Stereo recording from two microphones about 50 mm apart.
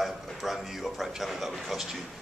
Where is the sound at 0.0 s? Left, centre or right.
Centre.